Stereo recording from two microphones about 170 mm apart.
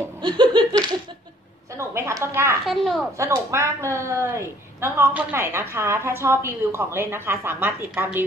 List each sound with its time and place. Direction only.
0.2 s laughter: 25° right (ahead or behind)
1.8 s a woman's voice: 15° right (ahead or behind)
2.6 s a child's voice: centre (ahead or behind)
3.2 s a woman's voice: 15° right (ahead or behind)